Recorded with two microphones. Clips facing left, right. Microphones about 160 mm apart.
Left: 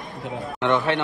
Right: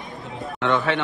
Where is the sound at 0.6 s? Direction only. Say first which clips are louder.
Left 1 dB; 15° left (ahead or behind).